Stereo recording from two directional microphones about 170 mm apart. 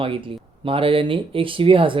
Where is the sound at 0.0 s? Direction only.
30° right (ahead or behind).